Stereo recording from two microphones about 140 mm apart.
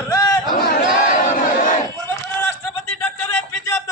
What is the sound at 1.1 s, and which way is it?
Battle cry, 65° left (ahead or behind).